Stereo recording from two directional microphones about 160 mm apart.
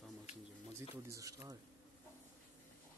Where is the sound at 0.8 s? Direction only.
20° right (ahead or behind).